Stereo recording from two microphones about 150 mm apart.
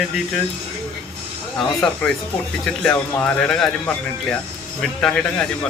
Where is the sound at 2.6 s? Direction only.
5° left (ahead or behind).